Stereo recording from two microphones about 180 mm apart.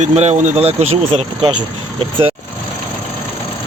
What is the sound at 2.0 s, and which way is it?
Speech, 30° right (ahead or behind).